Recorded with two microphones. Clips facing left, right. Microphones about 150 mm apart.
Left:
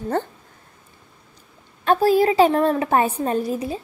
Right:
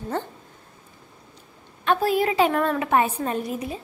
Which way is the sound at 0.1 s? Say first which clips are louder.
Left 5 dB; 50° left (ahead or behind).